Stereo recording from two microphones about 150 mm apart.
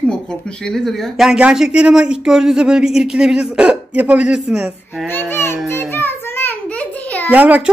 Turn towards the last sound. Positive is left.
turn(degrees=-10)  # may be behind; listen again after turning